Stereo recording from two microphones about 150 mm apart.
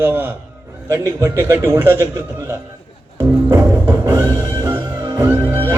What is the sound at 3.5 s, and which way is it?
Music, 20° right (ahead or behind).